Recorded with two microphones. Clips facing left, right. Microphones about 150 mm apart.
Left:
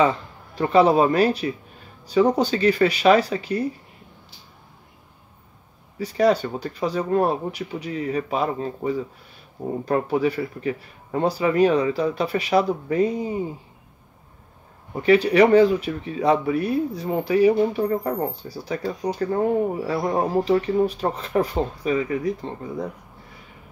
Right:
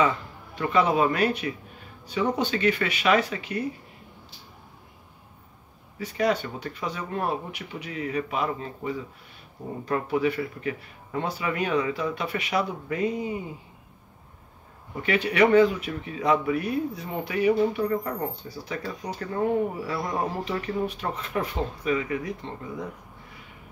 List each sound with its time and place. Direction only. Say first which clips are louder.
0.6 s speech: left 6 dB; 35° left (ahead or behind)
5.9 s speech: left 6 dB; 35° left (ahead or behind)
15.0 s speech: left 6 dB; 35° left (ahead or behind)
19.9 s speech: left 6 dB; 35° left (ahead or behind)